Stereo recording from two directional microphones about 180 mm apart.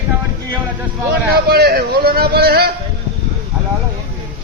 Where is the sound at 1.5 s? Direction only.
60° right (ahead or behind).